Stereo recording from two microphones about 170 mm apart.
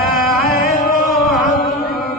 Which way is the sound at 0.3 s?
60° left (ahead or behind).